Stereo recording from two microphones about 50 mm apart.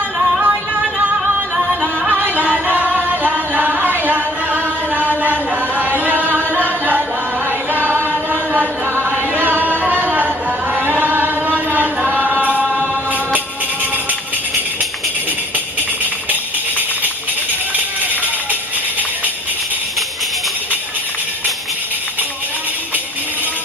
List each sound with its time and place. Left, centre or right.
0.2 s music: centre
0.9 s music: right
6.0 s singing: right
6.6 s music: right